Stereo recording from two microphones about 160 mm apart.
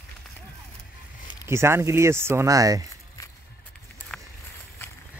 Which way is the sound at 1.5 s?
15° right (ahead or behind).